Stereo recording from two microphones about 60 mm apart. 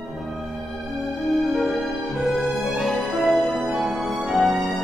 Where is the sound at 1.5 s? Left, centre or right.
Centre.